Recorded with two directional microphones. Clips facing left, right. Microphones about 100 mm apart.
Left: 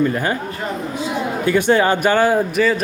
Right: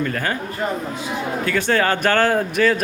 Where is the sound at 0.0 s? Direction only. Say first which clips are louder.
Left 4 dB; 15° left (ahead or behind).